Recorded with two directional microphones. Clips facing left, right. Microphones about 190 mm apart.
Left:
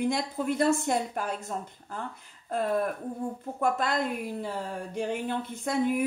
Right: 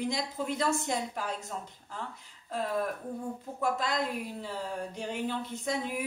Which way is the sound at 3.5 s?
55° left (ahead or behind).